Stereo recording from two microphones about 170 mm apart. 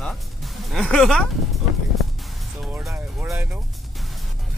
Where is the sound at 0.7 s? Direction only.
Centre (ahead or behind).